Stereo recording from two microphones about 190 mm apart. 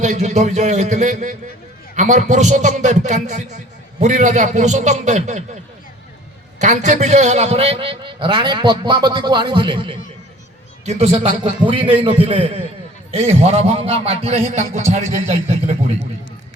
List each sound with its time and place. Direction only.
0.0 s a man's voice: 35° right (ahead or behind)
6.6 s a man's voice: 40° right (ahead or behind)
11.9 s a man's voice: 30° right (ahead or behind)